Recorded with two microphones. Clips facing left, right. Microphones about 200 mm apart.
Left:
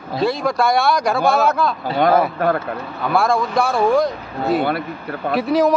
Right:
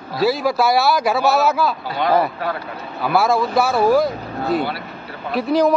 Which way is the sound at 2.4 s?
50° left (ahead or behind).